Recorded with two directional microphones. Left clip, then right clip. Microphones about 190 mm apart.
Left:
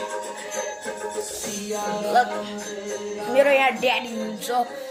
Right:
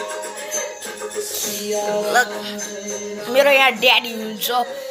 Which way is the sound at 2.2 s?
10° right (ahead or behind).